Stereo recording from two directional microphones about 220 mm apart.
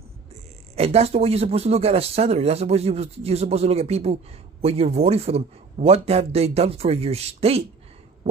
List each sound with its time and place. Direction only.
0.7 s speech: 30° right (ahead or behind)